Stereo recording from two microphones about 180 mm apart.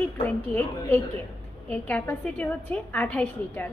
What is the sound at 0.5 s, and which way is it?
A woman's voice, 10° left (ahead or behind).